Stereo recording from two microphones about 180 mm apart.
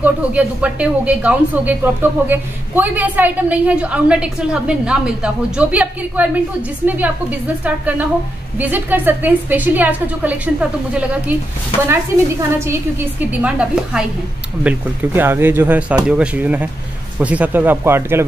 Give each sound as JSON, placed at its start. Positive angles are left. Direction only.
{"t": 0.0, "sound": "speech", "side_deg": -5}